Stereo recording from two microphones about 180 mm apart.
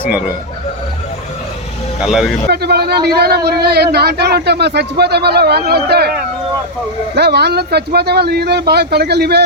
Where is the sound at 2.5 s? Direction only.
65° right (ahead or behind).